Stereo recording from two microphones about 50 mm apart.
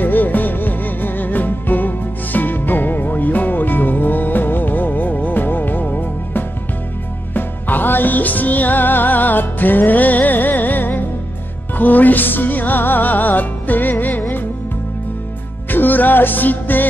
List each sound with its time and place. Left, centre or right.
0.0 s music: left
15.7 s music: left